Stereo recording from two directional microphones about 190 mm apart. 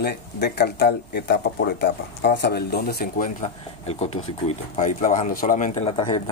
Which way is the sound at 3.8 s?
30° left (ahead or behind).